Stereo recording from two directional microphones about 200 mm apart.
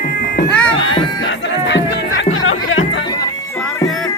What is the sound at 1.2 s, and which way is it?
Music, 65° left (ahead or behind).